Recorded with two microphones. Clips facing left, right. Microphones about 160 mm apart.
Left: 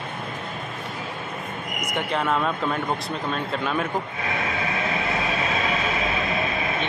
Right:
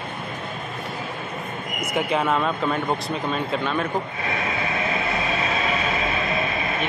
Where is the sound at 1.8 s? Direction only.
5° right (ahead or behind).